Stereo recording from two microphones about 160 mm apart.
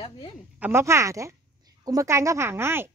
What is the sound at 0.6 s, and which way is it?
A woman's voice, 15° right (ahead or behind).